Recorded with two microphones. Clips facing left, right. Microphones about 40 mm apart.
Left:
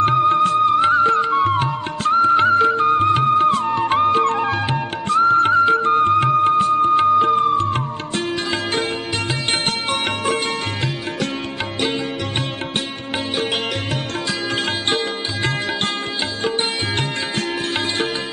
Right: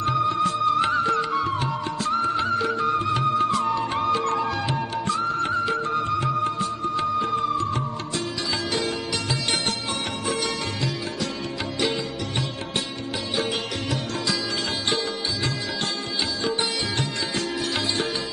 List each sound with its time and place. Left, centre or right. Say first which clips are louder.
0.0 s music: left 7 dB; left
0.7 s music: left 7 dB; left
1.4 s music: left 7 dB; left
14.9 s sitar: left 4 dB; left
16.4 s music: left 5 dB; left